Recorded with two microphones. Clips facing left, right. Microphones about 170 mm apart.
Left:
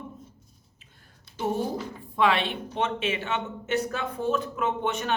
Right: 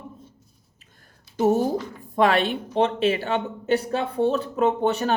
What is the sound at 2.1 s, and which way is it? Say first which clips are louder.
A man's voice: right 4 dB; 45° right (ahead or behind).